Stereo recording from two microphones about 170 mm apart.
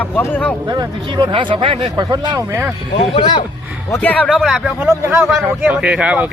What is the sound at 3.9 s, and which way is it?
Speech, 10° left (ahead or behind).